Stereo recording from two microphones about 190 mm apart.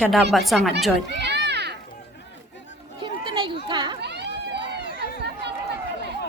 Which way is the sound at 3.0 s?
25° right (ahead or behind).